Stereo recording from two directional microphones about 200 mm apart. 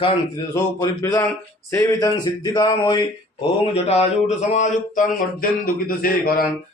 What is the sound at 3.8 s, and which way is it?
Speech, 35° left (ahead or behind).